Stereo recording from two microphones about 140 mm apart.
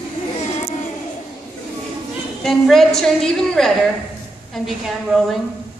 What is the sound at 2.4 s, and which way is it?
A woman's voice, centre (ahead or behind).